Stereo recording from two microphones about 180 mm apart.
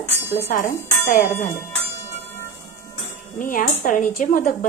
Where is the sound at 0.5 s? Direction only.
50° left (ahead or behind).